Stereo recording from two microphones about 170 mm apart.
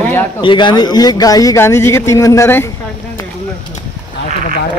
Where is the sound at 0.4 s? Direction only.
30° left (ahead or behind).